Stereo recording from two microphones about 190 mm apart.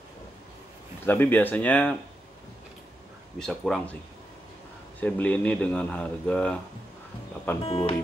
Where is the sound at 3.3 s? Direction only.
5° left (ahead or behind).